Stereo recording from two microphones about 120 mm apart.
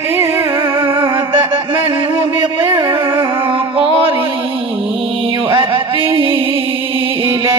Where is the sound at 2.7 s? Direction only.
45° right (ahead or behind).